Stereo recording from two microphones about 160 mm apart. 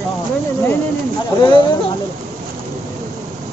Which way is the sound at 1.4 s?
30° left (ahead or behind).